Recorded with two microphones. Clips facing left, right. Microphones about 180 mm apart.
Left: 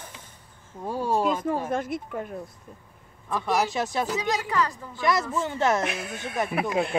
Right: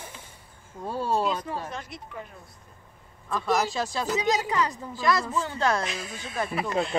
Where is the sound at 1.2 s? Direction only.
50° left (ahead or behind).